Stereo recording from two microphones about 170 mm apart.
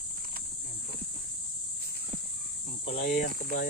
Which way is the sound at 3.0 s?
55° left (ahead or behind).